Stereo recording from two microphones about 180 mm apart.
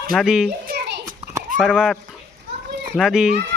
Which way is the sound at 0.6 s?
60° right (ahead or behind).